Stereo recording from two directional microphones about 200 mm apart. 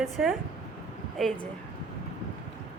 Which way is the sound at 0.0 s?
Centre (ahead or behind).